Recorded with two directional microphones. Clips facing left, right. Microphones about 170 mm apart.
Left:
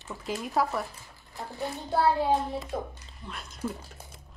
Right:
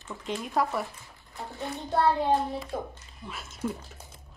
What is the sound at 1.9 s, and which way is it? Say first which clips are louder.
Speech: even; 5° left (ahead or behind).